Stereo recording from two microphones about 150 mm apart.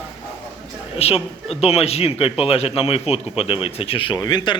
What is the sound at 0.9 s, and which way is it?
A woman's voice, 40° left (ahead or behind).